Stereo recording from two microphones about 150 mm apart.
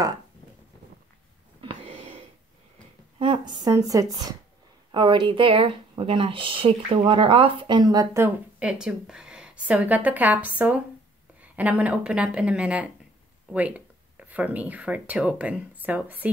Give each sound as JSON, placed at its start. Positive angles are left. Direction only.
{"t": 1.6, "sound": "wheeze", "side_deg": -35}
{"t": 3.2, "sound": "speech", "side_deg": -30}
{"t": 4.9, "sound": "speech", "side_deg": -30}
{"t": 8.5, "sound": "a woman's voice", "side_deg": -5}